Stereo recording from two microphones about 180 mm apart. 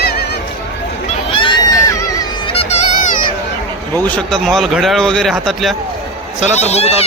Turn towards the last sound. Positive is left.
turn(degrees=35)  # may be behind; listen again after turning